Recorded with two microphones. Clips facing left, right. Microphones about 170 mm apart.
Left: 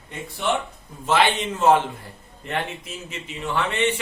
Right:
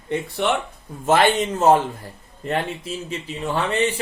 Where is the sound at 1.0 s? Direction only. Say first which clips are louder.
Right 3 dB; 45° right (ahead or behind).